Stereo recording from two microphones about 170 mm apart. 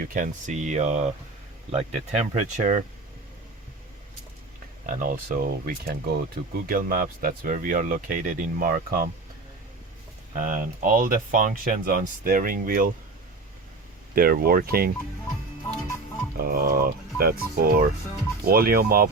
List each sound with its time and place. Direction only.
0.0 s speech: 50° right (ahead or behind)
4.9 s speech: 50° right (ahead or behind)
10.3 s speech: 50° right (ahead or behind)
14.2 s speech: 60° right (ahead or behind)
16.4 s speech: 60° right (ahead or behind)